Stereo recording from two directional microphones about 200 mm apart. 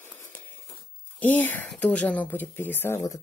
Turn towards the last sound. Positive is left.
turn(degrees=15)  # may be behind; listen again after turning